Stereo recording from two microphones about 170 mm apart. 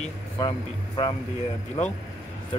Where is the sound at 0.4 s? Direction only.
25° left (ahead or behind).